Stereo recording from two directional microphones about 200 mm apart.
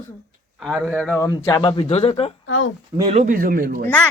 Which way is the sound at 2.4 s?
80° left.